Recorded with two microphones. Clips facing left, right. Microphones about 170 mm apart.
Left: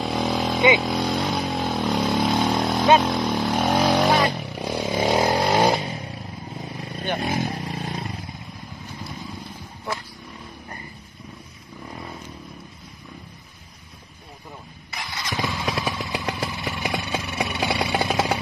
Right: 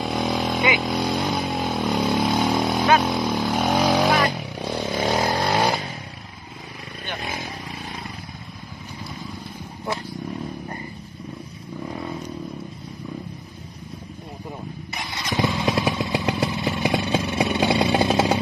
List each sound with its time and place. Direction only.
0.0 s vehicle: centre (ahead or behind)
0.8 s speech: 5° right (ahead or behind)
1.2 s vehicle: centre (ahead or behind)
3.0 s speech: 5° right (ahead or behind)
4.3 s vehicle: centre (ahead or behind); by 5.8 s 20° left (ahead or behind)
7.2 s vehicle: 45° left (ahead or behind)
15.0 s motorcycle: 20° right (ahead or behind)